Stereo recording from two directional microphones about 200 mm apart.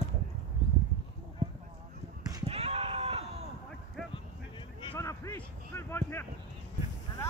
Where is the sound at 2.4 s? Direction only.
30° right (ahead or behind).